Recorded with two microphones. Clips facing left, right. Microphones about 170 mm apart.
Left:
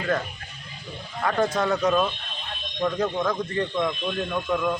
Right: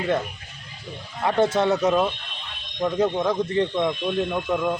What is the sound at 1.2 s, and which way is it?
Speech, 25° right (ahead or behind).